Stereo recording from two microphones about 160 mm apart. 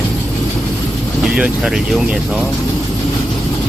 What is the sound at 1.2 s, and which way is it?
Speech, 5° right (ahead or behind).